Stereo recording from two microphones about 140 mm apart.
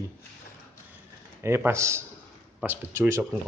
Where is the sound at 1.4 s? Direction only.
20° right (ahead or behind).